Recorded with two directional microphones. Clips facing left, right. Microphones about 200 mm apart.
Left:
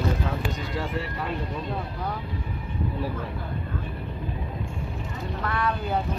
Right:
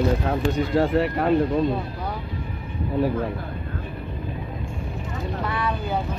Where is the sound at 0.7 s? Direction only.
60° right (ahead or behind).